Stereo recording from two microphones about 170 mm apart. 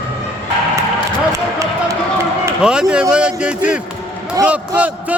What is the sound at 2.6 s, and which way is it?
A man's voice, 5° right (ahead or behind).